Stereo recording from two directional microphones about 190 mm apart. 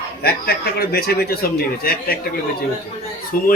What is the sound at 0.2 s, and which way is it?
A man's voice, 55° left (ahead or behind).